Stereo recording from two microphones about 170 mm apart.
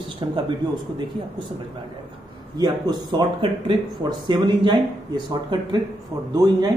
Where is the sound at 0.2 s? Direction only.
25° right (ahead or behind).